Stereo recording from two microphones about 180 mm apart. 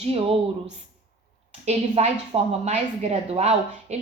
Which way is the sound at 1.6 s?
35° right (ahead or behind).